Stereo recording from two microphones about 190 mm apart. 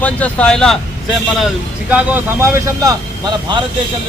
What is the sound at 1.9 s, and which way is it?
Speech, 10° right (ahead or behind).